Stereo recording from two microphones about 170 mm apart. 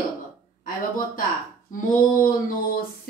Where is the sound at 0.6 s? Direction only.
55° left (ahead or behind).